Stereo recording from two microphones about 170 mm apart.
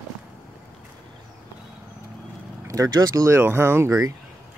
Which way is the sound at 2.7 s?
20° right (ahead or behind).